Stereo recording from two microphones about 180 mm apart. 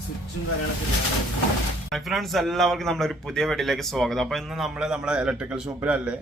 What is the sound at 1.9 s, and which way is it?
A man's voice, centre (ahead or behind).